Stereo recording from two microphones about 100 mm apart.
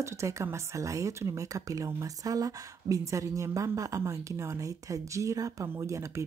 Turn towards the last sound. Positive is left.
turn(degrees=-30)  # may be behind; listen again after turning